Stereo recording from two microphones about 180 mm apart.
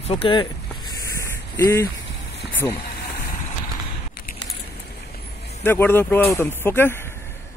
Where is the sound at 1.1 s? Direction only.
15° left (ahead or behind).